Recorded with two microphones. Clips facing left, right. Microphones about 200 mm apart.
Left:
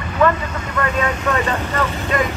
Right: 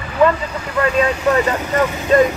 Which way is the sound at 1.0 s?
35° right (ahead or behind).